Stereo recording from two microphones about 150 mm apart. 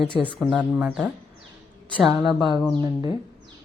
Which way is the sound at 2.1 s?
40° left (ahead or behind).